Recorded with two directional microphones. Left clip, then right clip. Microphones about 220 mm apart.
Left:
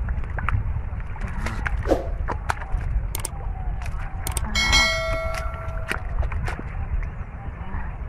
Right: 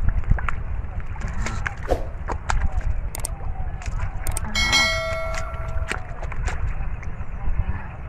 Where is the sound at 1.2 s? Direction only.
5° left (ahead or behind).